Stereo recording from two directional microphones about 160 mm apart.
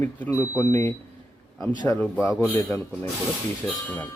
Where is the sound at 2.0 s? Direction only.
10° left (ahead or behind).